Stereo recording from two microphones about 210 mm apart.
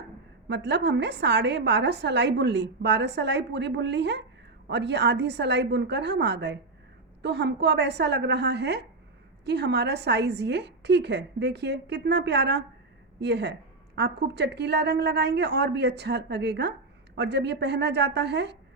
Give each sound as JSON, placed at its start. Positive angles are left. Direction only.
{"t": 0.4, "sound": "a woman's voice", "side_deg": -55}